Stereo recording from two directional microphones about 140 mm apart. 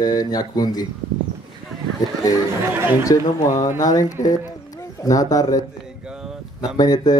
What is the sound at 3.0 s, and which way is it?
Speech, 25° left (ahead or behind).